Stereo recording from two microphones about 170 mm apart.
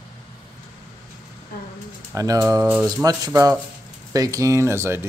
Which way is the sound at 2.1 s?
20° right (ahead or behind).